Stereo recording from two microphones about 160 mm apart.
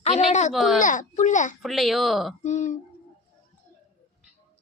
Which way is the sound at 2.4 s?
45° left (ahead or behind).